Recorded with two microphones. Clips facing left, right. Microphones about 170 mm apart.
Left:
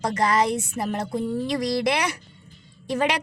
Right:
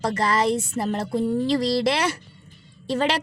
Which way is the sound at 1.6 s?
15° left (ahead or behind).